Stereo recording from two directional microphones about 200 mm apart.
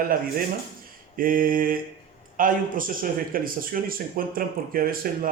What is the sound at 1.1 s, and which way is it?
Speech, 45° right (ahead or behind).